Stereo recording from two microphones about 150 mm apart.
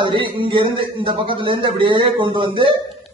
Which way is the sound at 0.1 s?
35° right (ahead or behind).